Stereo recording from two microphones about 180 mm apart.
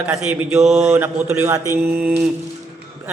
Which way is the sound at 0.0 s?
5° right (ahead or behind).